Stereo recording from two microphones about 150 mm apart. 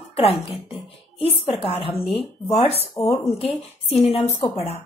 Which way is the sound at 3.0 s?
15° left (ahead or behind).